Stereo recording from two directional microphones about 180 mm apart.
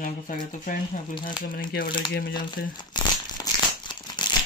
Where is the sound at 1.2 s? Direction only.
55° left (ahead or behind).